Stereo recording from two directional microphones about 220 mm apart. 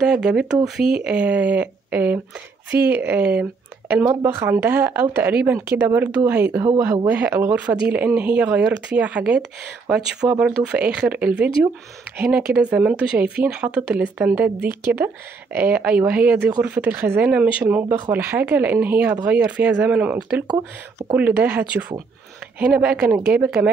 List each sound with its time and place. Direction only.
0.0 s speech: 5° right (ahead or behind)
0.7 s speech: 45° right (ahead or behind)
1.0 s speech: 5° right (ahead or behind)
2.7 s speech: 50° right (ahead or behind)
3.2 s speech: 5° right (ahead or behind)
10.6 s speech: 5° right (ahead or behind)